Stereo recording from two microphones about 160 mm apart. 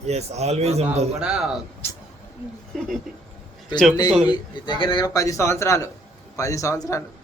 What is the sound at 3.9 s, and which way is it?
A man's voice, 25° left (ahead or behind).